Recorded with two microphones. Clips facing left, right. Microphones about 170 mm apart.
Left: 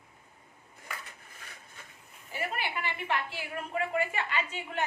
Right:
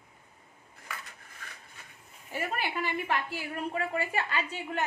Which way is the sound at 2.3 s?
45° right (ahead or behind).